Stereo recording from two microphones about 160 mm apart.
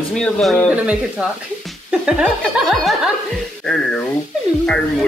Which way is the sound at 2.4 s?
Centre (ahead or behind).